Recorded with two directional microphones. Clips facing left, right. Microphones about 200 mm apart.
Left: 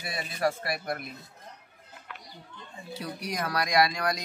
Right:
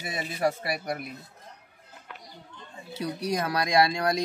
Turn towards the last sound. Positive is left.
turn(degrees=-30)  # may be behind; listen again after turning